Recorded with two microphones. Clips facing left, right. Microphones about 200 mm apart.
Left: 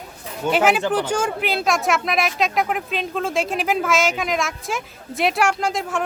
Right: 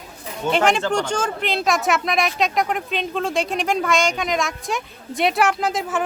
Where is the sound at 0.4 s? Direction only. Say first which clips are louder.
Left 1 dB; 5° left (ahead or behind).